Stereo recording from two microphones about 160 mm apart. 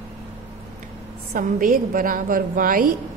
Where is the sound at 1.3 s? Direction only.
60° right (ahead or behind).